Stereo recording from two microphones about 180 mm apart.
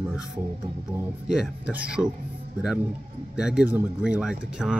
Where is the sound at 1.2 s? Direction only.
5° right (ahead or behind).